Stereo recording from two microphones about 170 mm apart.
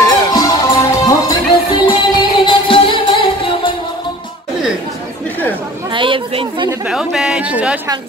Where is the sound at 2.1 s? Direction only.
30° left (ahead or behind).